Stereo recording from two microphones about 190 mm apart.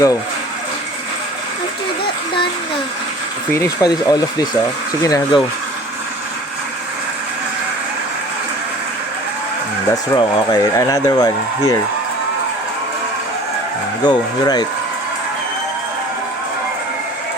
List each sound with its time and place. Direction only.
3.5 s speech: 15° left (ahead or behind)
9.9 s speech: 20° left (ahead or behind)
14.0 s speech: 20° left (ahead or behind)